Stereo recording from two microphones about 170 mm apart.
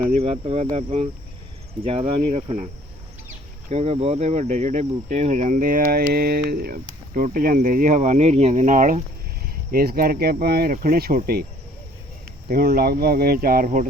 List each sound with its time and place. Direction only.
0.2 s speech: 35° right (ahead or behind)
3.7 s speech: 35° right (ahead or behind); by 11.4 s 65° right (ahead or behind)
12.5 s speech: 60° right (ahead or behind)